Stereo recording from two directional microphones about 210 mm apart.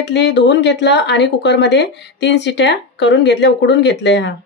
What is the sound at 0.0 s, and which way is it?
Speech, 55° left (ahead or behind).